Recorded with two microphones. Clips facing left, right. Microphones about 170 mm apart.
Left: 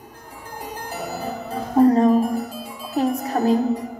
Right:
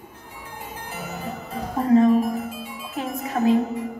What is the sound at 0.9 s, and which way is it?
Music, 40° left (ahead or behind).